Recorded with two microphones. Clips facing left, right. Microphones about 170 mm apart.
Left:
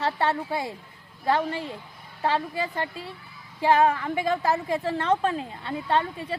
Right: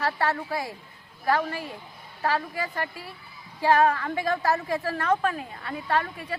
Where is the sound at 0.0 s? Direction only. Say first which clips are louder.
Left 1 dB; 20° left (ahead or behind).